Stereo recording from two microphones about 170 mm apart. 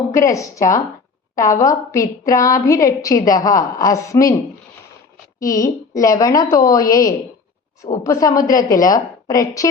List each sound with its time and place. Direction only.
0.1 s a woman's voice: 20° left (ahead or behind)
5.4 s a woman's voice: 20° left (ahead or behind)